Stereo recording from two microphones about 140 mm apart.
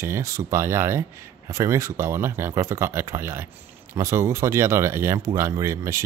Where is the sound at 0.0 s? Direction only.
20° right (ahead or behind).